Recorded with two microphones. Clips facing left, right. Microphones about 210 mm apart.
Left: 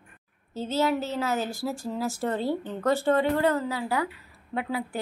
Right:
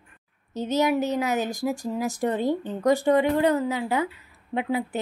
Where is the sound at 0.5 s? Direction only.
15° right (ahead or behind).